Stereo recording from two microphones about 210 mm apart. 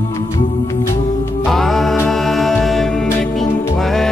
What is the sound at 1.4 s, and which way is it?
Music, centre (ahead or behind).